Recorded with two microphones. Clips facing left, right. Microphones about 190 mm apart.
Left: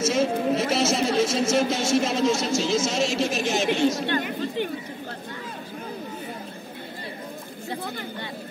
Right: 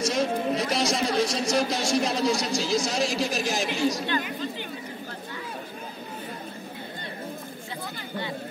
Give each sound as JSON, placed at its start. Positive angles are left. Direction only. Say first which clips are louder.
{"t": 0.0, "sound": "a man's voice", "louder": "left 3 dB", "side_deg": 5}
{"t": 4.1, "sound": "speech", "louder": "left 3 dB", "side_deg": 60}